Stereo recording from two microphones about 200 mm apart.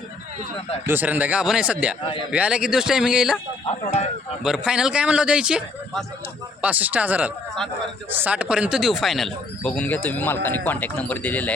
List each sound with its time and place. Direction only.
0.9 s a man's voice: 10° right (ahead or behind)
3.7 s speech: 35° left (ahead or behind)
4.4 s a man's voice: 5° right (ahead or behind)